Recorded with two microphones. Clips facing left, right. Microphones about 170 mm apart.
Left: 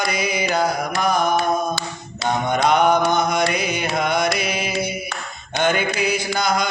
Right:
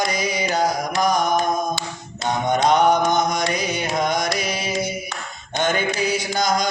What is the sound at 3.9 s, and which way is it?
Music, 40° right (ahead or behind).